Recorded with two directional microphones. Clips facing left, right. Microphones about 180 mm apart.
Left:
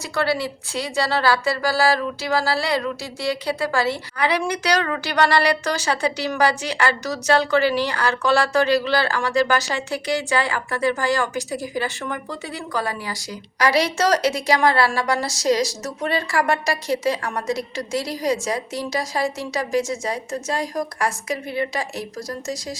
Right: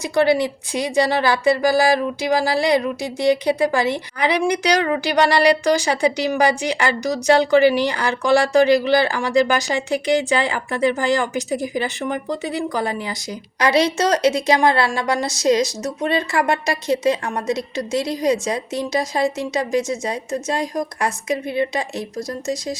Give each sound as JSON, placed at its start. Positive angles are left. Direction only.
{"t": 0.0, "sound": "a woman's voice", "side_deg": -15}